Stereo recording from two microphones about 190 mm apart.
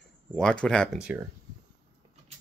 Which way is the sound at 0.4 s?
5° left (ahead or behind).